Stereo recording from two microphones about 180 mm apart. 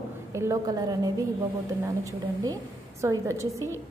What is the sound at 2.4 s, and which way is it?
A woman's voice, 20° right (ahead or behind).